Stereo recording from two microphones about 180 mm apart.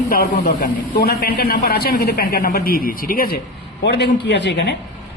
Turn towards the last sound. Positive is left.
turn(degrees=75)  # may be behind; listen again after turning